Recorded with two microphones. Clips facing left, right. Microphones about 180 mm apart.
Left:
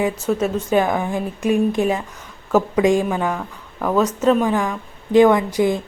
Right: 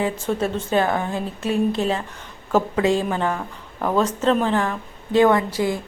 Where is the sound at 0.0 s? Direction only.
10° left (ahead or behind).